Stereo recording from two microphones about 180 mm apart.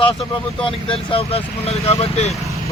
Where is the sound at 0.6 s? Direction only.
30° left (ahead or behind).